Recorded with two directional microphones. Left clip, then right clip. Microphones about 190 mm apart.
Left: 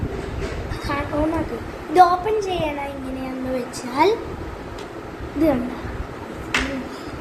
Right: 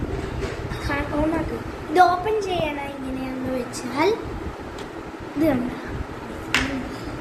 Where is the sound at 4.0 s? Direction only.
Centre (ahead or behind).